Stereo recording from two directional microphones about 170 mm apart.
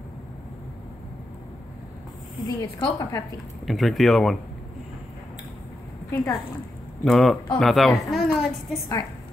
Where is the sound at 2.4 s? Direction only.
20° left (ahead or behind).